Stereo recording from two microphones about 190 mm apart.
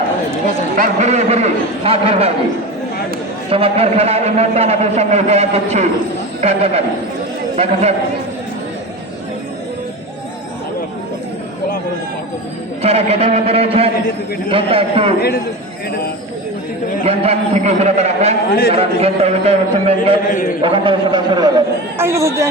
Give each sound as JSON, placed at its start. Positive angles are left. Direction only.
{"t": 0.8, "sound": "a man's voice", "side_deg": -40}
{"t": 3.5, "sound": "a man's voice", "side_deg": -30}
{"t": 12.8, "sound": "a man's voice", "side_deg": -35}
{"t": 17.0, "sound": "a man's voice", "side_deg": -35}